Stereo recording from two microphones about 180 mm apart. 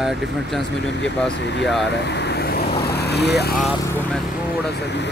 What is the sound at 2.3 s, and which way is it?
Vehicle, 60° left (ahead or behind).